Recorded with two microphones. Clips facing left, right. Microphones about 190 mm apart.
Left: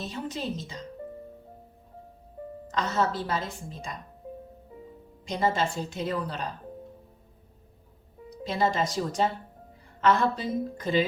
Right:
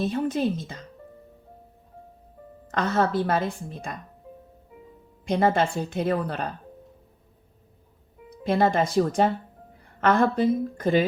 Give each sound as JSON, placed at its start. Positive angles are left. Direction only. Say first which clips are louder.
{"t": 0.0, "sound": "a woman's voice", "louder": "right 9 dB", "side_deg": -55}
{"t": 2.7, "sound": "a woman's voice", "louder": "right 4 dB", "side_deg": -55}
{"t": 5.2, "sound": "a woman's voice", "louder": "right 5 dB", "side_deg": -55}
{"t": 8.4, "sound": "a woman's voice", "louder": "right 5 dB", "side_deg": -55}